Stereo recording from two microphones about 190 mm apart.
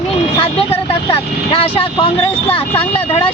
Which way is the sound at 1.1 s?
30° left (ahead or behind).